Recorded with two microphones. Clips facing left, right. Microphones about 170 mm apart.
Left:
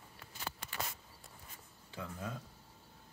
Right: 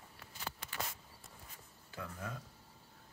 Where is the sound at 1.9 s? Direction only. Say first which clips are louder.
Left 2 dB; 20° left (ahead or behind).